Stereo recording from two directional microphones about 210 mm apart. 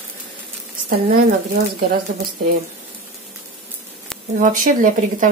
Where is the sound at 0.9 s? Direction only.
45° right (ahead or behind).